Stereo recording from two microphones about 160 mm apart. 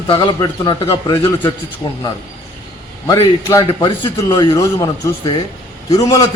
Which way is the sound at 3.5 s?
20° left (ahead or behind).